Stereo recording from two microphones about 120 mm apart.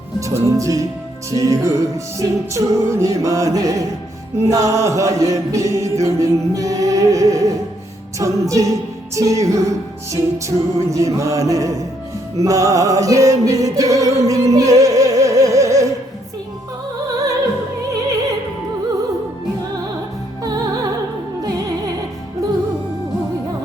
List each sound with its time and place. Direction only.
0.2 s a capella: 25° right (ahead or behind)
12.4 s music: 30° right (ahead or behind)
20.4 s music: 30° right (ahead or behind)